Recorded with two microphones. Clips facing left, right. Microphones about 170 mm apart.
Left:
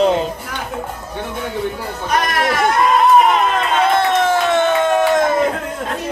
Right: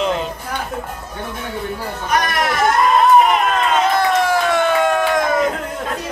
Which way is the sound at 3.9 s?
25° left (ahead or behind).